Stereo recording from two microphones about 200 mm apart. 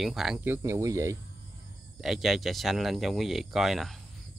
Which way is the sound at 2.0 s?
Centre (ahead or behind).